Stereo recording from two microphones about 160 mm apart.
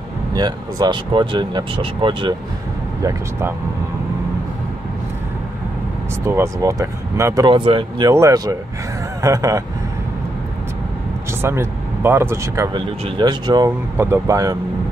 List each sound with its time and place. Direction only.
0.3 s speech: 25° right (ahead or behind)
3.0 s speech: 20° right (ahead or behind)
6.2 s speech: 15° right (ahead or behind)
7.4 s speech: 30° right (ahead or behind)
8.1 s speech: 20° right (ahead or behind)
11.4 s speech: 15° right (ahead or behind)
13.7 s speech: 15° right (ahead or behind)